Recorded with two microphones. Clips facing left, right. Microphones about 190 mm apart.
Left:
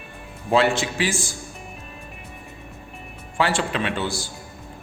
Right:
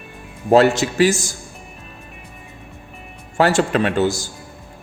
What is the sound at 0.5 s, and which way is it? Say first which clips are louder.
Speech: right 6 dB; 40° right (ahead or behind).